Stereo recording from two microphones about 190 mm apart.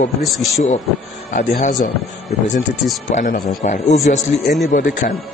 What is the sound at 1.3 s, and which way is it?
Speech, 45° left (ahead or behind).